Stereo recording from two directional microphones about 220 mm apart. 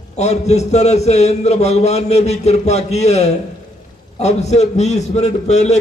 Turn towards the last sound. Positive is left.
turn(degrees=30)  # may be behind; listen again after turning